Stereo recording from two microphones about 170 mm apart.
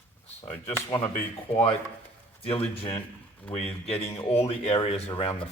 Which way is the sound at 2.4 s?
35° left (ahead or behind).